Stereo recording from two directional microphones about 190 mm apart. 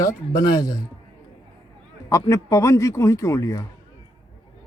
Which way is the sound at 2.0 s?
15° left (ahead or behind).